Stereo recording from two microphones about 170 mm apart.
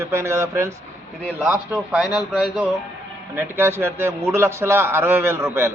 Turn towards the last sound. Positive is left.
turn(degrees=-15)  # may be behind; listen again after turning